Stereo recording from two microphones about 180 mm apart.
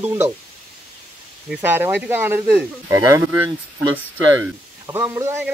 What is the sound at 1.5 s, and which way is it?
Speech, 10° right (ahead or behind).